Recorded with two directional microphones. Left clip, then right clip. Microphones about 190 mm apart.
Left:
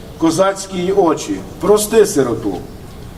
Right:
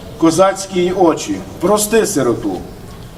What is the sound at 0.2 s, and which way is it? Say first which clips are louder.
A man's voice: right 2 dB; 20° left (ahead or behind).